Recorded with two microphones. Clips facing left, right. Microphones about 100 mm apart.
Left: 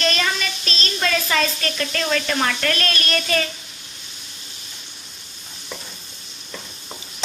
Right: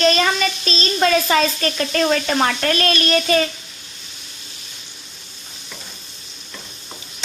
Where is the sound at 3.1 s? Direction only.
15° right (ahead or behind).